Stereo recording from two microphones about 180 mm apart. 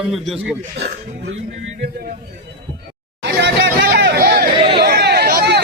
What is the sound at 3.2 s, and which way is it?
Hubbub, 65° right (ahead or behind).